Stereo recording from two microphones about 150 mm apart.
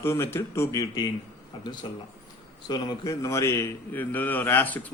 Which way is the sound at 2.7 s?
30° left (ahead or behind).